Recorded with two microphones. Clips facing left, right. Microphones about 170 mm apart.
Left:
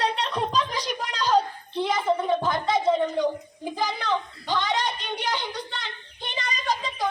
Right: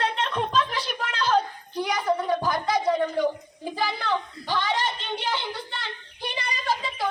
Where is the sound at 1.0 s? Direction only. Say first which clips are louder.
Left 1 dB; 35° left (ahead or behind).